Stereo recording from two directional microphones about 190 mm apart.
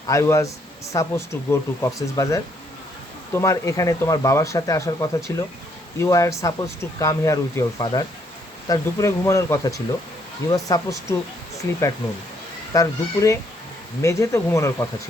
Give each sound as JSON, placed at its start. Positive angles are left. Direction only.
{"t": 0.1, "sound": "speech", "side_deg": 15}